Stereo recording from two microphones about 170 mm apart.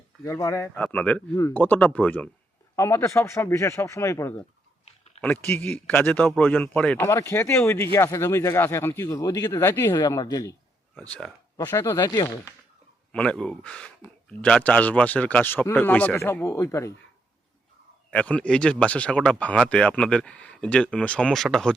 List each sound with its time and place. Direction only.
0.3 s speech: 20° left (ahead or behind)
11.5 s speech: 15° left (ahead or behind)
13.1 s speech: 5° left (ahead or behind)
18.1 s speech: 5° left (ahead or behind)